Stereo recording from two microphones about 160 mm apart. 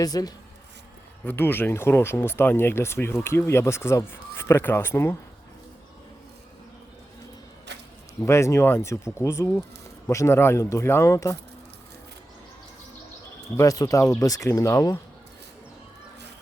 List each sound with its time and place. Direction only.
0.0 s speech: 25° left (ahead or behind)
1.2 s speech: 10° left (ahead or behind)
7.7 s a sound: 90° right
8.2 s speech: 20° left (ahead or behind)
13.6 s speech: 20° left (ahead or behind)